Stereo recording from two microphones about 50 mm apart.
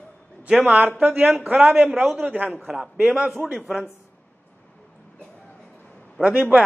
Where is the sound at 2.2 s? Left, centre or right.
Right.